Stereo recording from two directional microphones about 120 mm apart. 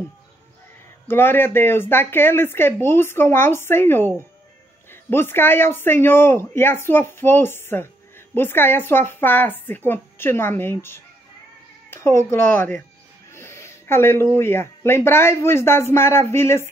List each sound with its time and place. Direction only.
1.0 s speech: 20° left (ahead or behind)
5.1 s speech: 20° left (ahead or behind)